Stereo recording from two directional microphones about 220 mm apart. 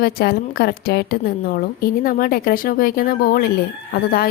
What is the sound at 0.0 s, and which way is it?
A woman's voice, 45° left (ahead or behind).